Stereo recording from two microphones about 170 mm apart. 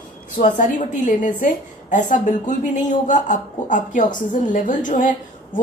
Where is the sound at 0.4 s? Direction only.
45° left (ahead or behind).